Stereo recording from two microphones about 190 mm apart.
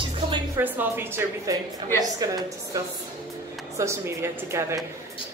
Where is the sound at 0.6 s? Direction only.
10° right (ahead or behind).